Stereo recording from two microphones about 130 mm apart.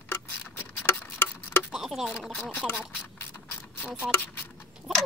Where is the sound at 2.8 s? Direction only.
15° left (ahead or behind).